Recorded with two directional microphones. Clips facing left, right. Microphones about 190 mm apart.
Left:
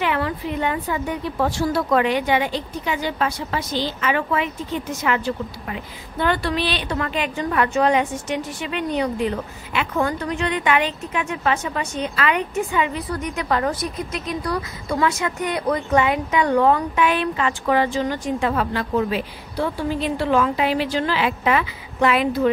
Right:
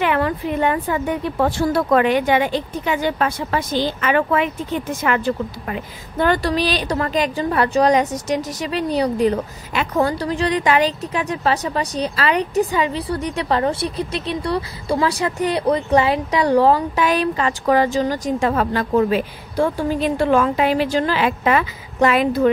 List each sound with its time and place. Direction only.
0.0 s a woman's voice: 55° right (ahead or behind)